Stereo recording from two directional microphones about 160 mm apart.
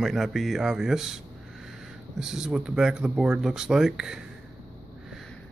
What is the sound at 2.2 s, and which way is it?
Speech, 5° right (ahead or behind).